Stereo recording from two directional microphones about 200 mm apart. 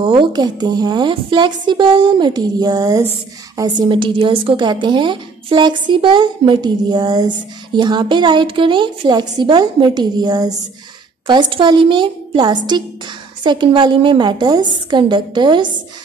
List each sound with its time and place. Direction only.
0.0 s a woman's voice: 25° right (ahead or behind)